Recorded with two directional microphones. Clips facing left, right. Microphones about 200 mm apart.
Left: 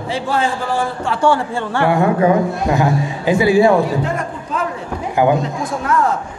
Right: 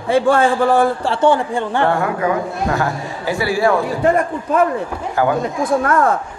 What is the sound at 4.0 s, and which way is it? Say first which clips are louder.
Speech: right 6 dB; 55° right (ahead or behind).